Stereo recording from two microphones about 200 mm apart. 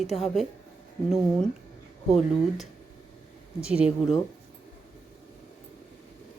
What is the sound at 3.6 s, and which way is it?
Speech, 5° right (ahead or behind).